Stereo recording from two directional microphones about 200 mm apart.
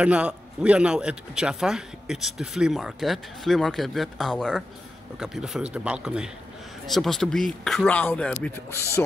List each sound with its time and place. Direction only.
0.0 s a man's voice: 5° right (ahead or behind)